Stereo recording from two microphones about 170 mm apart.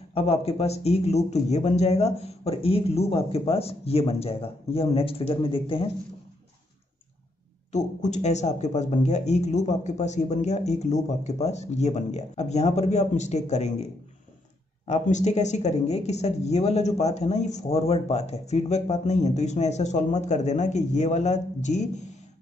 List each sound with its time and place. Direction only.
0.1 s speech: 35° left (ahead or behind)
7.7 s speech: 45° left (ahead or behind)
14.9 s speech: 45° left (ahead or behind)